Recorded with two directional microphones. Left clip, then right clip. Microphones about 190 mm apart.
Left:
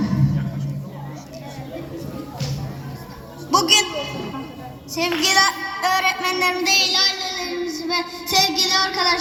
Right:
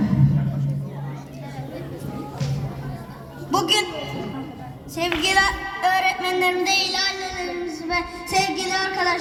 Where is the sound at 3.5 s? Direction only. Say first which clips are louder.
Left 4 dB; 25° right (ahead or behind).